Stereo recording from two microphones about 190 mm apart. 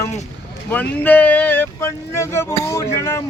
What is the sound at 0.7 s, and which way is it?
Speech, 10° left (ahead or behind).